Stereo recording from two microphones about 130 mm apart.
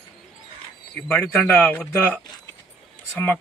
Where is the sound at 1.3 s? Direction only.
10° left (ahead or behind).